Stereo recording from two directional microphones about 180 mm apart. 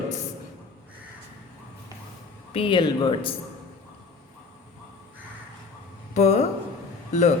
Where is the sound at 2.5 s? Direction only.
25° left (ahead or behind).